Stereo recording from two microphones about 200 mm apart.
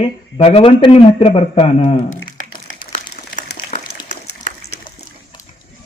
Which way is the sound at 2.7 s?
35° left (ahead or behind).